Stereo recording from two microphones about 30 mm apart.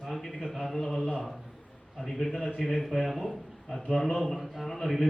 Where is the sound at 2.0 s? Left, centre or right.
Centre.